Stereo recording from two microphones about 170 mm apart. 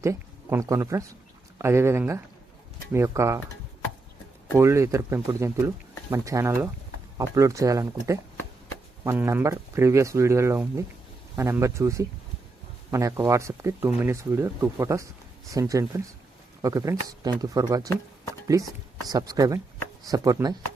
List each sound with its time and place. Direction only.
0.0 s speech: 15° right (ahead or behind)
4.5 s speech: 15° right (ahead or behind)
19.0 s speech: 20° right (ahead or behind)